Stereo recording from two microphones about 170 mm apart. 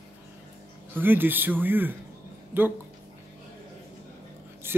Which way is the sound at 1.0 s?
10° right (ahead or behind).